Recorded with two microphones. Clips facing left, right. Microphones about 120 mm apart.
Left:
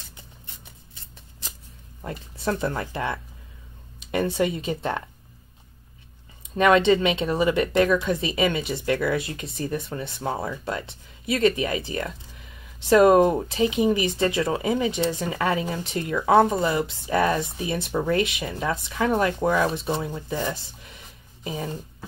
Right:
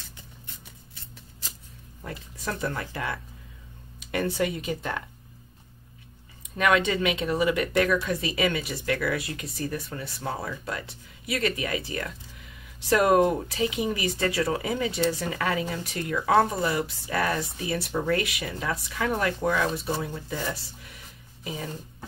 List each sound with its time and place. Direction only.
2.0 s speech: 30° left (ahead or behind)
6.5 s speech: 30° left (ahead or behind)